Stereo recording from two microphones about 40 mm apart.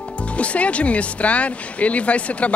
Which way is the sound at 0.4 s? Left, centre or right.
Left.